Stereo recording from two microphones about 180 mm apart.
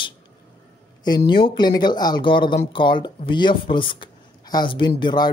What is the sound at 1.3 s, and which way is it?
Speech, 25° left (ahead or behind).